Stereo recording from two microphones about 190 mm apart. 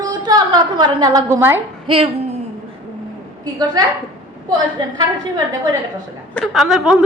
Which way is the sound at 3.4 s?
20° right (ahead or behind).